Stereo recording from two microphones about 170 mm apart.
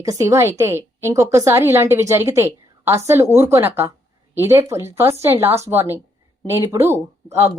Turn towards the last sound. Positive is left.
turn(degrees=-15)  # may be behind; listen again after turning